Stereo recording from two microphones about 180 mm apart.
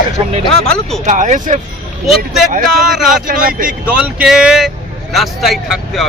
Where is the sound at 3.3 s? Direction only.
50° right (ahead or behind).